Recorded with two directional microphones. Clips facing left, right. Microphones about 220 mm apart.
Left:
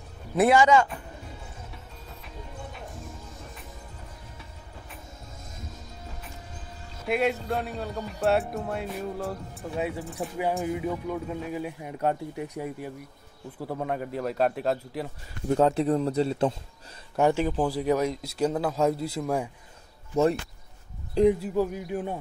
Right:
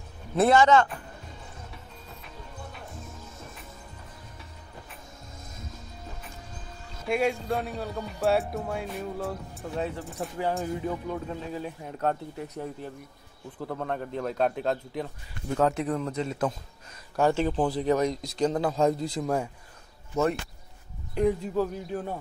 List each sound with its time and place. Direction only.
0.4 s speech: 10° left (ahead or behind)
7.1 s speech: centre (ahead or behind)
15.5 s speech: 30° left (ahead or behind)
17.2 s speech: 10° left (ahead or behind)
21.1 s speech: 25° left (ahead or behind)
21.4 s speech: 10° left (ahead or behind)